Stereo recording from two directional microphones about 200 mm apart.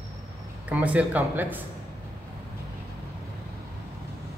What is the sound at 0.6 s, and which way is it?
Speech, 5° right (ahead or behind).